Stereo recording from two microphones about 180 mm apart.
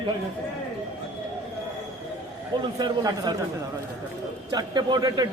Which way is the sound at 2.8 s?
25° right (ahead or behind).